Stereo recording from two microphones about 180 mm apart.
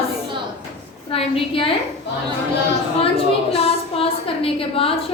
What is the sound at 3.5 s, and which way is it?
A woman's voice, 30° left (ahead or behind).